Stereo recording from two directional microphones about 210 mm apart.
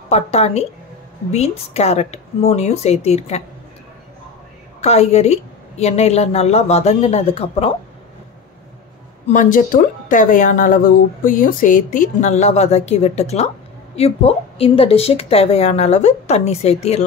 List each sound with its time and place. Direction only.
0.1 s speech: 30° left (ahead or behind)
4.8 s speech: 30° left (ahead or behind)
9.3 s speech: 40° left (ahead or behind)